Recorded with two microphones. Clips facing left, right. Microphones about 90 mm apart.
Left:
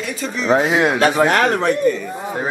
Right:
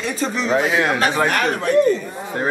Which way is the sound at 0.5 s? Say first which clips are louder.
Left 4 dB; 20° left (ahead or behind).